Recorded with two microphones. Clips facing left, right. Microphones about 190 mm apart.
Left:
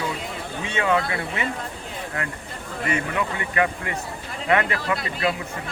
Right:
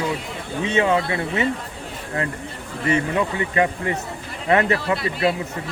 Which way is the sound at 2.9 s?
25° right (ahead or behind).